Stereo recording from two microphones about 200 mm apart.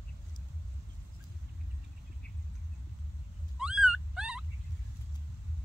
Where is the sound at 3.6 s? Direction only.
5° right (ahead or behind).